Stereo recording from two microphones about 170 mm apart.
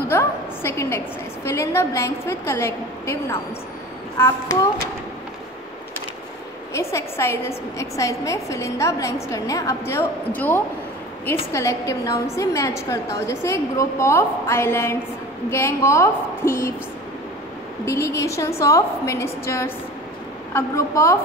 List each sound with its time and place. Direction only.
0.1 s a woman's voice: 15° left (ahead or behind)
6.7 s a woman's voice: 15° left (ahead or behind)
17.8 s a woman's voice: 15° left (ahead or behind)